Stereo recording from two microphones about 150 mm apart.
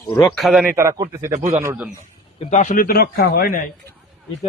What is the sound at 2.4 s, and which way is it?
A man's voice, 55° left (ahead or behind).